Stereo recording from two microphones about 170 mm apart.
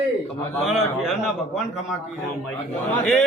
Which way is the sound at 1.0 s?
Centre (ahead or behind).